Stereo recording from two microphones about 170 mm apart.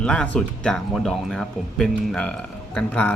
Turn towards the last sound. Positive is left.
turn(degrees=10)  # may be behind; listen again after turning